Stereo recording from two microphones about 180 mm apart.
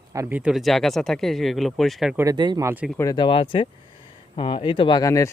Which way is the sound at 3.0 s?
20° left (ahead or behind).